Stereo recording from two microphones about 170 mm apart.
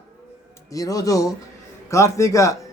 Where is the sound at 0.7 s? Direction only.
20° left (ahead or behind).